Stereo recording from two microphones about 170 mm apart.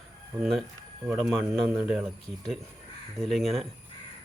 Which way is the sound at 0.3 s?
Centre (ahead or behind).